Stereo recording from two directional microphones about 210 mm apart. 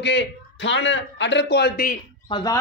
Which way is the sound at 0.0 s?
55° left (ahead or behind).